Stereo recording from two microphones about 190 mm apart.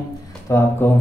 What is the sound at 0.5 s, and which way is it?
Speech, 15° left (ahead or behind).